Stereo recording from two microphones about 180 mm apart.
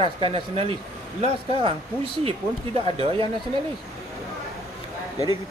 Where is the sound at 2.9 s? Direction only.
30° right (ahead or behind).